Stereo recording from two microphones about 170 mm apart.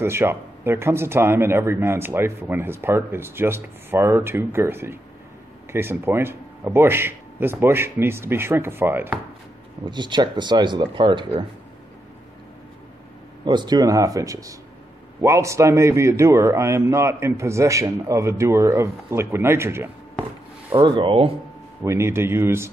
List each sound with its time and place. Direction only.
0.0 s speech: 15° right (ahead or behind)
9.8 s speech: 25° right (ahead or behind)
13.5 s speech: 25° right (ahead or behind)
20.7 s speech: 30° right (ahead or behind)
21.8 s speech: 15° right (ahead or behind)